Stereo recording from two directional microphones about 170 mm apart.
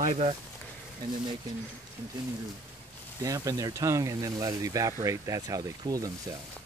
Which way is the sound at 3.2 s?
20° right (ahead or behind).